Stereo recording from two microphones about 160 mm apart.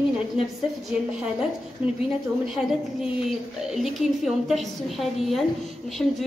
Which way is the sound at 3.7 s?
Centre (ahead or behind).